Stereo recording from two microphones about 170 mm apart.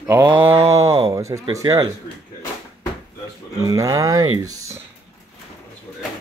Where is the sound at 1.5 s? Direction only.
20° right (ahead or behind).